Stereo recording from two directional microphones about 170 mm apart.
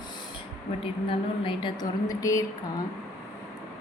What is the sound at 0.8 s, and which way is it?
A woman's voice, 30° left (ahead or behind).